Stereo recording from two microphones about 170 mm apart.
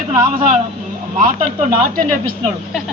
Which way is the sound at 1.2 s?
55° right (ahead or behind).